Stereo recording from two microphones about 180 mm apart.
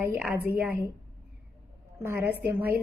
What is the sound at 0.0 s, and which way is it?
Speech, 10° right (ahead or behind).